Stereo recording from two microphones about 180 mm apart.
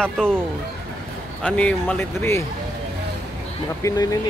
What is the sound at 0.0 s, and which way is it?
Speech, 5° left (ahead or behind).